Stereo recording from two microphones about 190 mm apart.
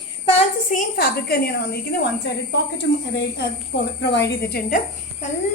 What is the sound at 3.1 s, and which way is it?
A woman's voice, 65° left (ahead or behind).